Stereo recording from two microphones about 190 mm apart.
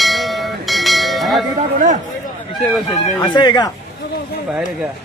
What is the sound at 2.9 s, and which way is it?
Speech, 20° left (ahead or behind).